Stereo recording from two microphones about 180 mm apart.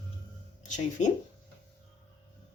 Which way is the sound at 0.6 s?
45° left (ahead or behind).